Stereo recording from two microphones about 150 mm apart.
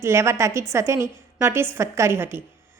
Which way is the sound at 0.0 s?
20° right (ahead or behind).